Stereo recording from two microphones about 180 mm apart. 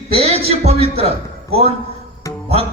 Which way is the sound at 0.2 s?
35° right (ahead or behind).